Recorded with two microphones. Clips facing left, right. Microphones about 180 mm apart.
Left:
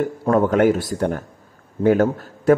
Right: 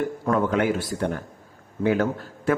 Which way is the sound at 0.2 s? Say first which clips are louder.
Left 7 dB; 40° left (ahead or behind).